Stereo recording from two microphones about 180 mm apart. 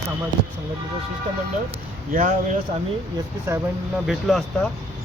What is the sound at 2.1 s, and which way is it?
Speech, 45° right (ahead or behind).